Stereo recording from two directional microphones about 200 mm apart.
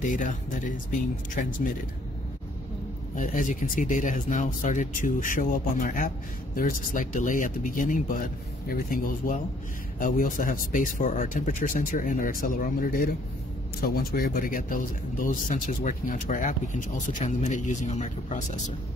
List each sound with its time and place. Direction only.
0.0 s speech: 40° left (ahead or behind)
3.2 s speech: 40° left (ahead or behind)